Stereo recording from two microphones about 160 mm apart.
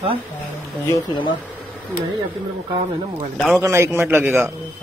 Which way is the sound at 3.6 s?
20° right (ahead or behind).